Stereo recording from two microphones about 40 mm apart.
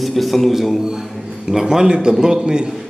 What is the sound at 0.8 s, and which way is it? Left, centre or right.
Speech, centre.